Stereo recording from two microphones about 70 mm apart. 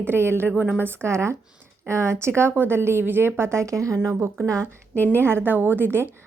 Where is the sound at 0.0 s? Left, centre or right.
Right.